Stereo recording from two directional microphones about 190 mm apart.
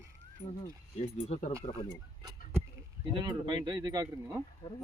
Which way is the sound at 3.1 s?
25° right (ahead or behind).